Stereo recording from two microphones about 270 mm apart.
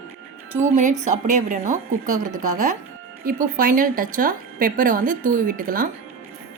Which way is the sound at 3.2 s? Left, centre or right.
Right.